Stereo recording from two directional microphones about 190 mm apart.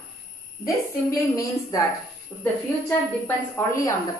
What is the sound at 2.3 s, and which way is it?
Speech, centre (ahead or behind).